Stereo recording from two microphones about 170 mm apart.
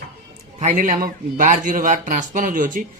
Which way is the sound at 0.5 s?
50° right (ahead or behind).